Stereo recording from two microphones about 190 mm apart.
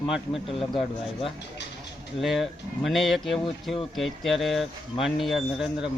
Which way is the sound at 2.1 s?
Centre (ahead or behind).